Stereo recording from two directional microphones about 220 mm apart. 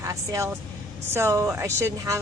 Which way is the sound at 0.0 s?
15° right (ahead or behind).